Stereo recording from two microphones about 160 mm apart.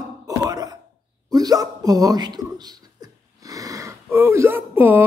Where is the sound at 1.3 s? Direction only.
25° right (ahead or behind).